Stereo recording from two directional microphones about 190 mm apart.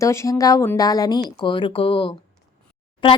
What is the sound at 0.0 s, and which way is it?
A woman's voice, 15° left (ahead or behind).